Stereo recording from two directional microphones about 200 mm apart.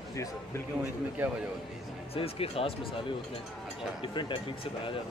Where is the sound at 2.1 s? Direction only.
30° left (ahead or behind).